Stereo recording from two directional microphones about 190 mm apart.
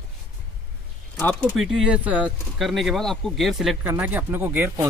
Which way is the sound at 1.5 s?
5° right (ahead or behind).